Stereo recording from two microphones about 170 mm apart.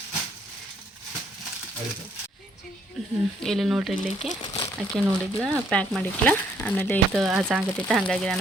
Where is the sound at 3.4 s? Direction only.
Centre (ahead or behind).